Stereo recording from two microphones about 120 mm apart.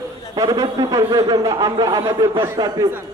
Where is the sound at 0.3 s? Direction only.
30° right (ahead or behind).